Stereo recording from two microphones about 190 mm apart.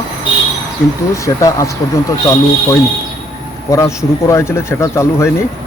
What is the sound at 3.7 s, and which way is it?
A man's voice, 15° left (ahead or behind).